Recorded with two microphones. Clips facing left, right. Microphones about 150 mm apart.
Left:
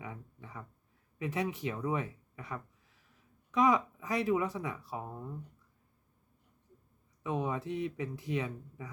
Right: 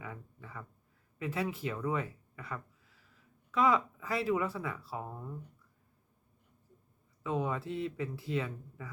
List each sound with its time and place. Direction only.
0.0 s a sound: 20° left (ahead or behind)
1.2 s speech: 20° left (ahead or behind)
7.2 s speech: 20° left (ahead or behind)